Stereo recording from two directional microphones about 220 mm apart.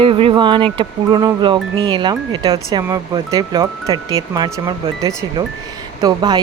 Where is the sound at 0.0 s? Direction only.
25° right (ahead or behind).